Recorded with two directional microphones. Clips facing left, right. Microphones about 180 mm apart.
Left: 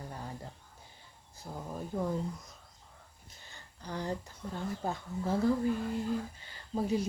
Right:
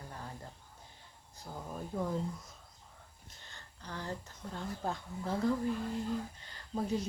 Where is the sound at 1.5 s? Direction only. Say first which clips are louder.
Left 2 dB; centre (ahead or behind).